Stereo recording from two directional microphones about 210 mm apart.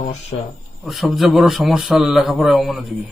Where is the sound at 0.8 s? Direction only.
Centre (ahead or behind).